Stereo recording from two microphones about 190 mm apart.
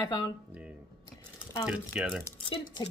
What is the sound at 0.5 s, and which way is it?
Speech, 5° right (ahead or behind).